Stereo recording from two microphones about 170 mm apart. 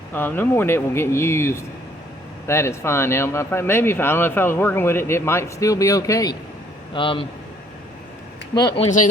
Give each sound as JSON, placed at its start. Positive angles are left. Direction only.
{"t": 0.1, "sound": "speech", "side_deg": 10}
{"t": 6.9, "sound": "speech", "side_deg": 30}
{"t": 8.5, "sound": "speech", "side_deg": 25}